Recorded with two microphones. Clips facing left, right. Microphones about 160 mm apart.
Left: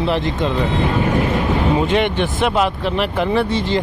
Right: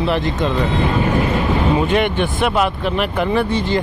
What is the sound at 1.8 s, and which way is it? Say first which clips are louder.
Speech: even; 25° left (ahead or behind).